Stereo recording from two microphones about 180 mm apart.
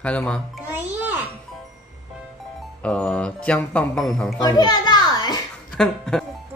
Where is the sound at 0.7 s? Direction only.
10° right (ahead or behind).